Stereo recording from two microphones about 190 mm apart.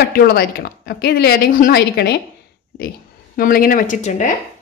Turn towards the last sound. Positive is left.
turn(degrees=40)  # may be behind; listen again after turning